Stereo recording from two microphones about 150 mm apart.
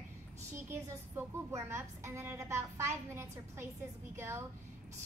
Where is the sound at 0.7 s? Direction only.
15° right (ahead or behind).